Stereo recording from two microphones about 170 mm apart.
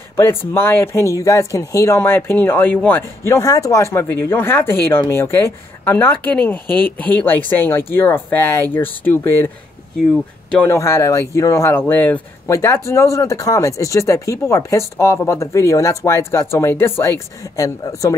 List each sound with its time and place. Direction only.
0.1 s speech: 15° left (ahead or behind)
10.5 s speech: 10° left (ahead or behind)